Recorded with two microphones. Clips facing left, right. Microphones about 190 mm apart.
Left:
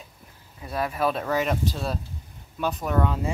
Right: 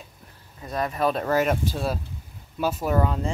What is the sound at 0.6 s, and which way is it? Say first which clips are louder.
Speech: right 1 dB; 5° left (ahead or behind).